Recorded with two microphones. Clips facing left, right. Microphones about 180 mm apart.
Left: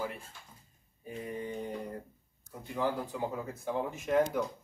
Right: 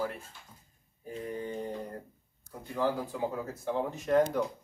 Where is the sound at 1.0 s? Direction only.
5° left (ahead or behind).